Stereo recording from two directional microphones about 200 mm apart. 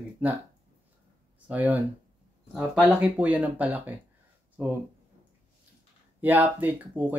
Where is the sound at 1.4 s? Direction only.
10° right (ahead or behind).